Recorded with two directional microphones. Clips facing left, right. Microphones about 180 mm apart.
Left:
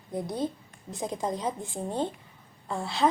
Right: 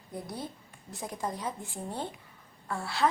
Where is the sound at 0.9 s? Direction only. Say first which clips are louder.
Left 5 dB; 20° left (ahead or behind).